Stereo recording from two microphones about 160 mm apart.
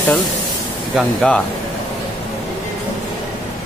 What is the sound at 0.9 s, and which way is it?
Speech, 5° left (ahead or behind).